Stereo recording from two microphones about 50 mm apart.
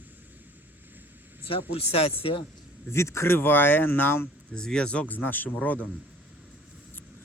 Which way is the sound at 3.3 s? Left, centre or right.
Left.